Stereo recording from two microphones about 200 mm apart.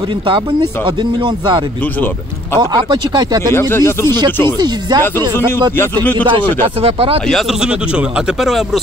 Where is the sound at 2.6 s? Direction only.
20° right (ahead or behind).